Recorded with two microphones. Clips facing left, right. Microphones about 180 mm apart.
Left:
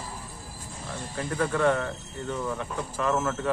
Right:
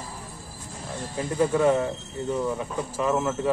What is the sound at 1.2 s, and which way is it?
Speech, 20° right (ahead or behind).